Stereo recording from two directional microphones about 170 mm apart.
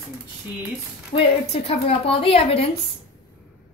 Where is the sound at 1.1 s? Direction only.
35° left (ahead or behind).